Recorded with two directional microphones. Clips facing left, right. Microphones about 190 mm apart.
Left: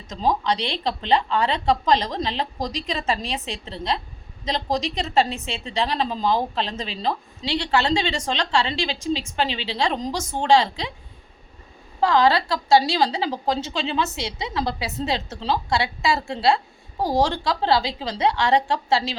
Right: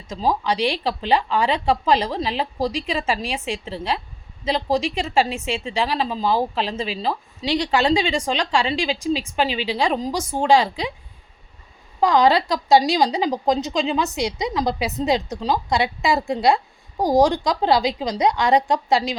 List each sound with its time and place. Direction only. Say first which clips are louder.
0.1 s speech: right 1 dB; 10° right (ahead or behind)
11.9 s speech: right 2 dB; 15° right (ahead or behind)